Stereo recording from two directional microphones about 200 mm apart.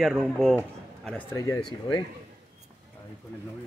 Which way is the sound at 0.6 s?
10° left (ahead or behind).